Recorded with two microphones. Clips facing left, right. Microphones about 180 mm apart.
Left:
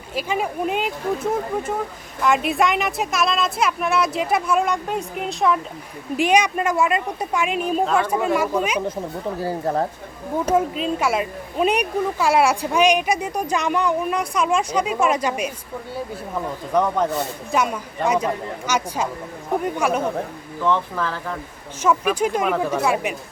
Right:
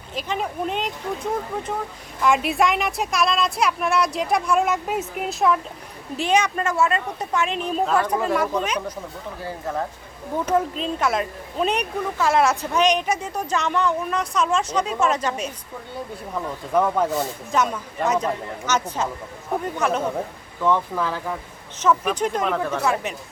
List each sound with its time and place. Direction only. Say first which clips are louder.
0.1 s a woman's voice: left 3 dB; 5° left (ahead or behind)
6.1 s speech: left 3 dB; 15° left (ahead or behind)
9.4 s speech: left 5 dB; 35° left (ahead or behind)
10.3 s speech: left 2 dB; 10° left (ahead or behind)
16.3 s a woman's voice: left 1 dB; 5° right (ahead or behind)
17.5 s speech: left 1 dB; 10° left (ahead or behind)
20.7 s speech: even; 10° right (ahead or behind)
21.8 s speech: left 1 dB; 10° left (ahead or behind)